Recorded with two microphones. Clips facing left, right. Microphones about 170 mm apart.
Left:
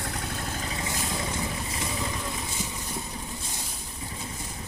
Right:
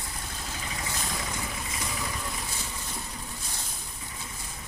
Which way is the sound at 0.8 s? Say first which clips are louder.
Left 2 dB; 25° left (ahead or behind).